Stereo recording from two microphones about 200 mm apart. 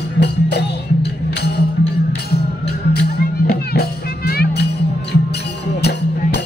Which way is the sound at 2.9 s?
55° left (ahead or behind).